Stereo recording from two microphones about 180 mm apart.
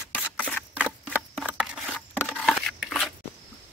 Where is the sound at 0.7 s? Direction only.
5° right (ahead or behind).